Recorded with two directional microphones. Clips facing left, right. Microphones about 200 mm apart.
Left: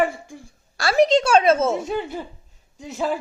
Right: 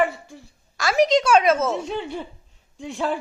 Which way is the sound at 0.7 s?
30° left (ahead or behind).